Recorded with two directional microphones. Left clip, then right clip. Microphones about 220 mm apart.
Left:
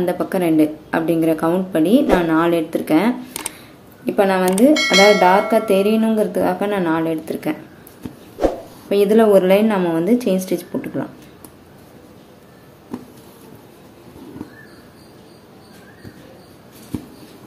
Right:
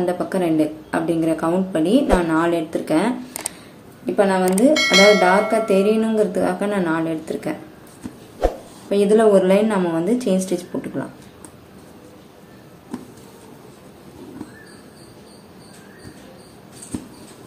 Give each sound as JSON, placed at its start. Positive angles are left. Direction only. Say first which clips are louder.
{"t": 0.0, "sound": "a woman's voice", "louder": "left 2 dB", "side_deg": 30}
{"t": 4.7, "sound": "speech", "louder": "right 1 dB", "side_deg": 0}
{"t": 5.5, "sound": "a woman's voice", "louder": "left 1 dB", "side_deg": 25}
{"t": 8.4, "sound": "a sound", "louder": "left 3 dB", "side_deg": 0}
{"t": 8.8, "sound": "a woman's voice", "louder": "left 1 dB", "side_deg": 30}